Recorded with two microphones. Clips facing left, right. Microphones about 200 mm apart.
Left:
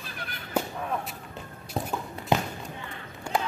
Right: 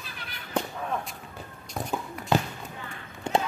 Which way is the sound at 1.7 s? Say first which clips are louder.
Left 3 dB; 30° left (ahead or behind).